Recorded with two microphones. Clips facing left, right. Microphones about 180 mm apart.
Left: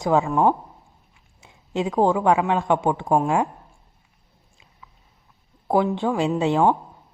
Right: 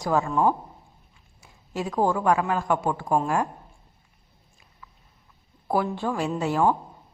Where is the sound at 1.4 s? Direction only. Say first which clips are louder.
Left 5 dB; 20° left (ahead or behind).